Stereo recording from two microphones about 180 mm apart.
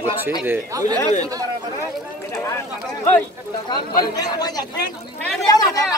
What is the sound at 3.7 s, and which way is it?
Speech, 20° left (ahead or behind).